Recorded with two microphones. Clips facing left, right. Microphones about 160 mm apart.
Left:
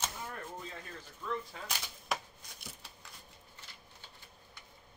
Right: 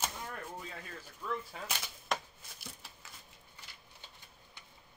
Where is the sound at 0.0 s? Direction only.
10° right (ahead or behind).